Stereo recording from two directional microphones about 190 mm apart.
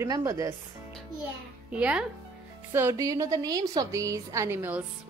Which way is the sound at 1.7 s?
5° right (ahead or behind).